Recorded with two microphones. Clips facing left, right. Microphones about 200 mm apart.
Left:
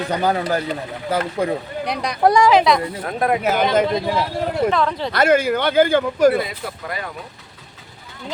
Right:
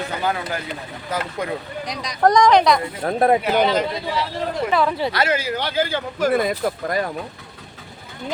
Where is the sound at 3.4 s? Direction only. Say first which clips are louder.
Left 1 dB; 45° left (ahead or behind).